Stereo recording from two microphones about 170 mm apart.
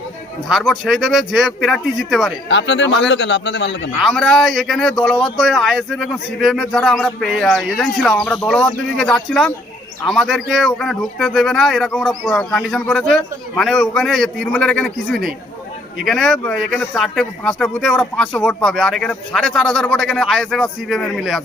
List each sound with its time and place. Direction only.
0.4 s speech: centre (ahead or behind)
2.5 s a man's voice: 90° left
4.0 s speech: centre (ahead or behind)